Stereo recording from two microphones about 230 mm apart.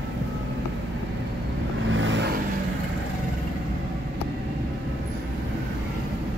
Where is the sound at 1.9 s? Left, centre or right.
Right.